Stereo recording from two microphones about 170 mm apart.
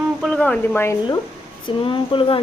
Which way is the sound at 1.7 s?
30° left (ahead or behind).